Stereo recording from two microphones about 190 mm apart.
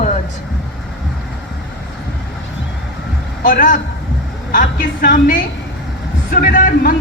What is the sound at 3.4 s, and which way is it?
Music, 45° left (ahead or behind).